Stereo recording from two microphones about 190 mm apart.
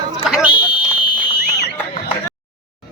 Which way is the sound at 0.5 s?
25° left (ahead or behind).